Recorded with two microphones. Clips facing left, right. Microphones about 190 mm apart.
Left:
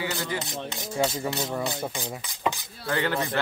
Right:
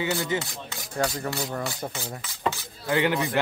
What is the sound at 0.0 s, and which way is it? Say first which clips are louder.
Speech: right 4 dB; 20° right (ahead or behind).